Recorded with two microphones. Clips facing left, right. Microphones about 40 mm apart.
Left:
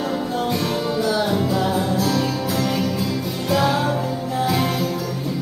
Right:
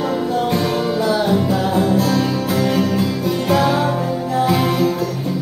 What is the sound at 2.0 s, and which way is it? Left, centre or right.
Music, centre.